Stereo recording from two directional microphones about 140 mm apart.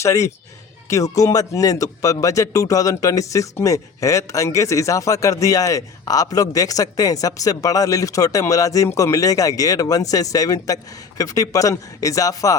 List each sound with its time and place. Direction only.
0.0 s speech: 20° left (ahead or behind)